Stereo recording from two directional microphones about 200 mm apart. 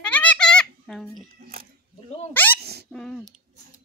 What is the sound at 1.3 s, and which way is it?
Speech, 45° right (ahead or behind).